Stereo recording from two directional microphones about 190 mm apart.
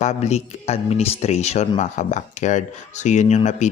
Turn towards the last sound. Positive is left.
turn(degrees=40)  # may be behind; listen again after turning